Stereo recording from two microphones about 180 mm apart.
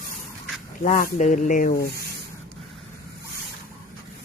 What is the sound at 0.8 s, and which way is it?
Speech, 45° left (ahead or behind).